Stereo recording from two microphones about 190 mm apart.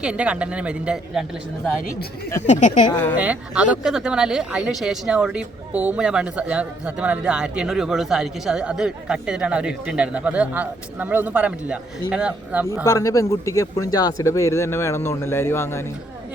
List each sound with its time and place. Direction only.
0.0 s speech: 5° right (ahead or behind)
2.5 s speech: 40° left (ahead or behind)
2.9 s speech: 10° left (ahead or behind)
3.2 s speech: 5° right (ahead or behind)
12.8 s speech: 15° left (ahead or behind)